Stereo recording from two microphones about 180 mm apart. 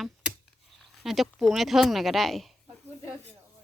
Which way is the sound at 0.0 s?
5° right (ahead or behind).